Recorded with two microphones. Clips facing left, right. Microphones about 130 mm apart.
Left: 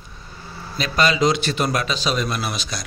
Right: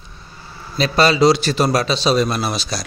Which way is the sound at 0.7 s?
30° right (ahead or behind).